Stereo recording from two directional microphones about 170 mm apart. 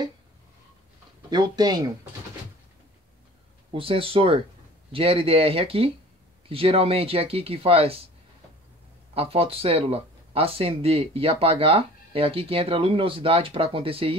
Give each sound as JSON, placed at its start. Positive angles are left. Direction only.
{"t": 1.3, "sound": "speech", "side_deg": -25}
{"t": 3.7, "sound": "speech", "side_deg": -30}
{"t": 9.1, "sound": "speech", "side_deg": -35}